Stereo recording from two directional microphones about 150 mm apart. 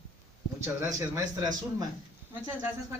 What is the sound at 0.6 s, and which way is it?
Speech, 20° right (ahead or behind).